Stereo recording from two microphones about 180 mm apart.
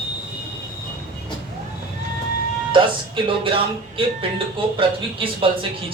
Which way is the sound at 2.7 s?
25° right (ahead or behind).